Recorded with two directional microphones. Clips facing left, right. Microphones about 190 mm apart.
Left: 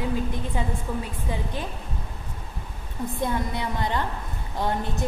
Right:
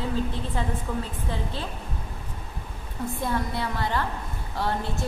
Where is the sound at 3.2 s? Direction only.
20° left (ahead or behind).